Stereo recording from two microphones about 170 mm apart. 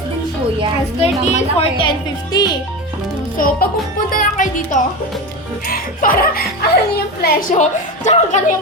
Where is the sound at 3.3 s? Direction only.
55° left (ahead or behind).